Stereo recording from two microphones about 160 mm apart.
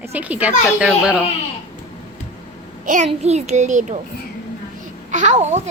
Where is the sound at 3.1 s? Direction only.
40° right (ahead or behind).